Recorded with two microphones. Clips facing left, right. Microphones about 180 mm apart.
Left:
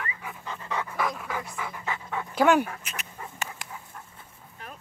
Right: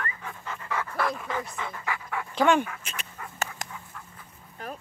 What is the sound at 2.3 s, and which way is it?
Speech, 5° left (ahead or behind).